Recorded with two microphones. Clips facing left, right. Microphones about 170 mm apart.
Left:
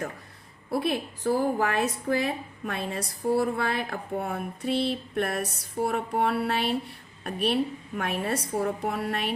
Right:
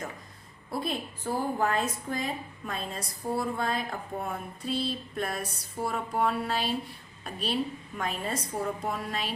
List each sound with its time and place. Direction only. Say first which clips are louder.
0.7 s a woman's voice: left 5 dB; 65° left (ahead or behind)